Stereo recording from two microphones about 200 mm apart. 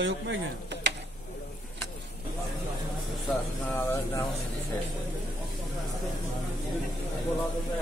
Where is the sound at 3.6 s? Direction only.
10° left (ahead or behind).